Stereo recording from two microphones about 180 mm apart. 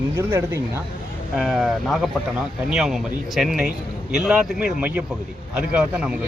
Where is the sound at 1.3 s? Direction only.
Centre (ahead or behind).